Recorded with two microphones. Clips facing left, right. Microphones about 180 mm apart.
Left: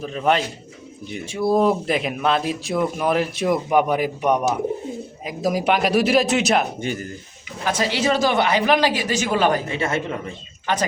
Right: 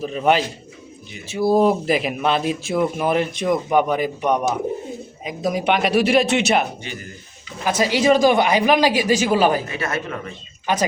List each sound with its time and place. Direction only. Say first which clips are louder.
0.0 s speech: right 2 dB; 5° right (ahead or behind)
6.7 s speech: left 7 dB; 45° left (ahead or behind)
7.6 s a man's voice: right 3 dB; 10° right (ahead or behind)
9.6 s speech: left 2 dB; 25° left (ahead or behind)